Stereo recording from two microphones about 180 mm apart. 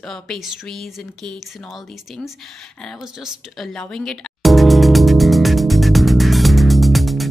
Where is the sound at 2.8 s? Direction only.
5° right (ahead or behind).